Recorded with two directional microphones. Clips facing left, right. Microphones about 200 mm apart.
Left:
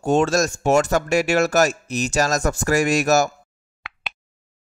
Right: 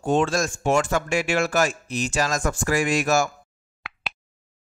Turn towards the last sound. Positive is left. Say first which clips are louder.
# right 1 dB
turn(degrees=0)  # may be behind; listen again after turning